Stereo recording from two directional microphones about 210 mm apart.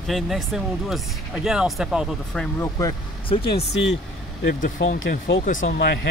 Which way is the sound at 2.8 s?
20° left (ahead or behind).